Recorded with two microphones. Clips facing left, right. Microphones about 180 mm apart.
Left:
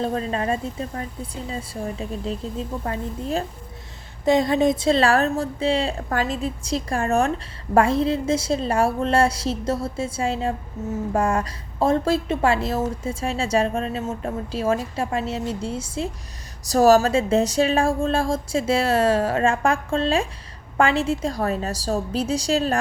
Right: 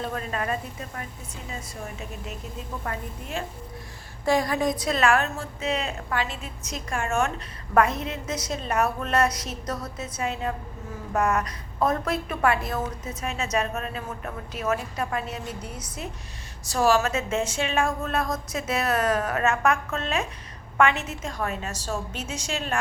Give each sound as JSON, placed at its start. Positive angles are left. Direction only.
{"t": 0.0, "sound": "a woman's voice", "side_deg": 30}
{"t": 16.6, "sound": "speech", "side_deg": 40}